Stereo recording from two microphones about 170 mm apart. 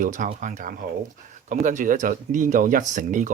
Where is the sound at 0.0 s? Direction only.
50° right (ahead or behind).